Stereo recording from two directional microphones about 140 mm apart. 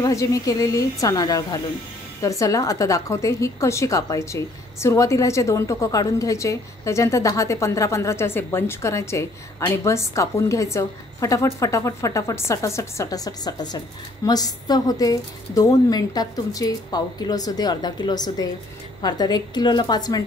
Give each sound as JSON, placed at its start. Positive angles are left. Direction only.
{"t": 0.0, "sound": "a woman's voice", "side_deg": 25}